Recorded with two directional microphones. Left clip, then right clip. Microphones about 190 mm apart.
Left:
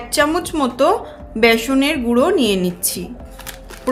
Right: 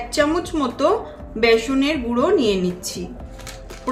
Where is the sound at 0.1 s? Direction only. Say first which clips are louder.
Left 3 dB; 55° left (ahead or behind).